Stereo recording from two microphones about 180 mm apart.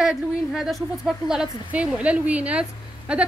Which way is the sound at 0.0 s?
Centre (ahead or behind).